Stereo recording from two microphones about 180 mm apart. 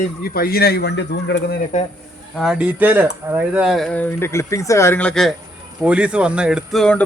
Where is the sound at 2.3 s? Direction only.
Centre (ahead or behind).